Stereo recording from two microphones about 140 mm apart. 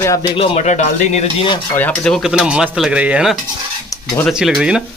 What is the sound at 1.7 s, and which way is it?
Speech, 10° left (ahead or behind).